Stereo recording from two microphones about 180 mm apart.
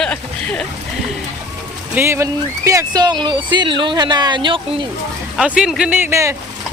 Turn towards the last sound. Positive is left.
turn(degrees=-15)  # may be behind; listen again after turning